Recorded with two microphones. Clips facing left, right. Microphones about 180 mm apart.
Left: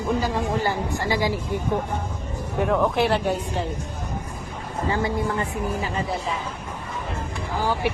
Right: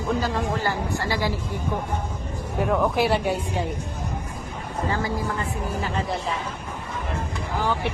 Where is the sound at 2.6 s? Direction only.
Centre (ahead or behind).